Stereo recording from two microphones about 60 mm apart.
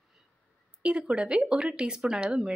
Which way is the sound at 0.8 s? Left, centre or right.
Centre.